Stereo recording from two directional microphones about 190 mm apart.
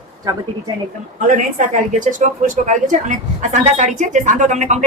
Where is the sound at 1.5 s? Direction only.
40° right (ahead or behind).